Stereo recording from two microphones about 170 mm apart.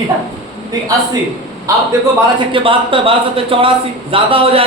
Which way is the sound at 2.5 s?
30° right (ahead or behind).